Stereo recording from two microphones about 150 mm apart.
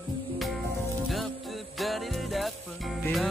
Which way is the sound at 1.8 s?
Centre (ahead or behind).